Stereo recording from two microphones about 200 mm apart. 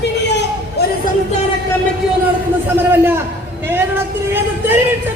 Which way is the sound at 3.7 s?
10° right (ahead or behind).